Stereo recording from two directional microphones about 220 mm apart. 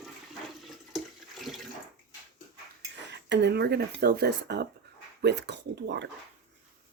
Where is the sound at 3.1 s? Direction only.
55° right (ahead or behind).